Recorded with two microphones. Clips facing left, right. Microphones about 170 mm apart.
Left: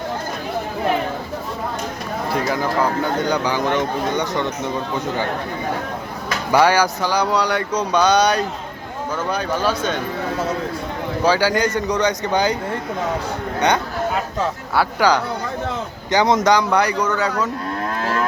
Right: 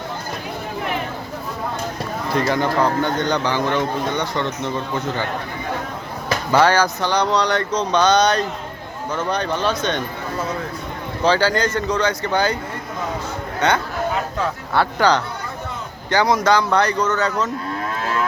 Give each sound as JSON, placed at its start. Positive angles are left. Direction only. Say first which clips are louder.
{"t": 2.3, "sound": "speech", "louder": "right 2 dB", "side_deg": 0}
{"t": 6.5, "sound": "speech", "louder": "left 1 dB", "side_deg": 10}
{"t": 11.2, "sound": "speech", "louder": "even", "side_deg": 10}
{"t": 13.6, "sound": "speech", "louder": "even", "side_deg": 15}
{"t": 16.0, "sound": "speech", "louder": "left 1 dB", "side_deg": 20}